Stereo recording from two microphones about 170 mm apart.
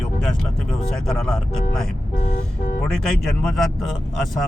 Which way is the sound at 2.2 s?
50° left (ahead or behind).